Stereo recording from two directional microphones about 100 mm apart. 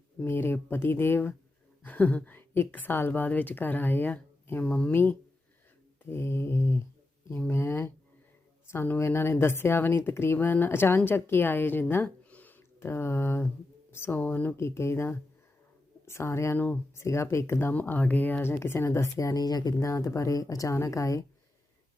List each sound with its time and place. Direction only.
0.2 s a woman's voice: 20° left (ahead or behind)
12.0 s a sound: 15° left (ahead or behind)
13.9 s speech: 25° left (ahead or behind); by 19.9 s 40° left (ahead or behind)
19.9 s speech: 30° left (ahead or behind)